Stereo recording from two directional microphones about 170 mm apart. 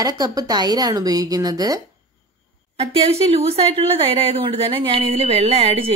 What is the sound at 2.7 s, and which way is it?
A woman's voice, 35° right (ahead or behind).